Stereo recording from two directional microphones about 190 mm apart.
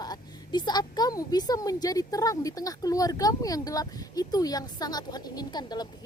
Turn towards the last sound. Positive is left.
turn(degrees=20)  # may be behind; listen again after turning